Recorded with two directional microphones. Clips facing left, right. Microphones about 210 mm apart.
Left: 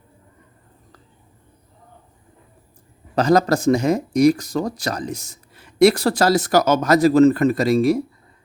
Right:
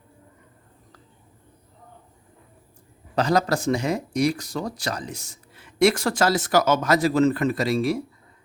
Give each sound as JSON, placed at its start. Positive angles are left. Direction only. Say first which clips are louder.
{"t": 3.2, "sound": "speech", "louder": "left 5 dB", "side_deg": 45}